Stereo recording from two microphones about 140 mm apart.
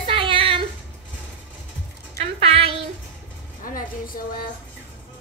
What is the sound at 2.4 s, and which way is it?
Child singing, 45° right (ahead or behind).